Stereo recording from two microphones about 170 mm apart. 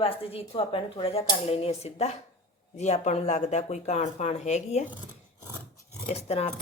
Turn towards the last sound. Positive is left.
turn(degrees=40)  # may be behind; listen again after turning